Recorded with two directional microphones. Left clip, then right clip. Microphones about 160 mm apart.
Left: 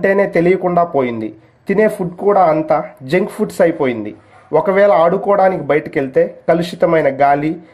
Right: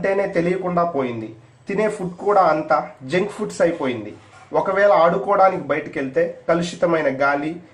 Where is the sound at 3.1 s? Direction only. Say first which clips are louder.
Left 8 dB; 45° left (ahead or behind).